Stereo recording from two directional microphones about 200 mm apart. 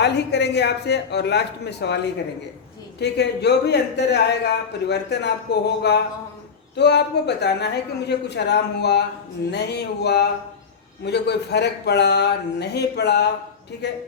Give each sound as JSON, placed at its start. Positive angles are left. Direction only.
{"t": 0.0, "sound": "a man's voice", "side_deg": 60}
{"t": 3.0, "sound": "a man's voice", "side_deg": 55}